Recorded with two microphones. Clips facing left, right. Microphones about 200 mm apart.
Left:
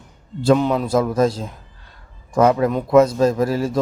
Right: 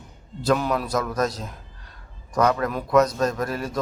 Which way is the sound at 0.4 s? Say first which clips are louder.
Left 6 dB; 25° left (ahead or behind).